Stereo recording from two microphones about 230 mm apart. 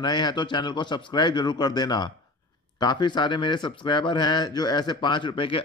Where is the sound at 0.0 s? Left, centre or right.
Centre.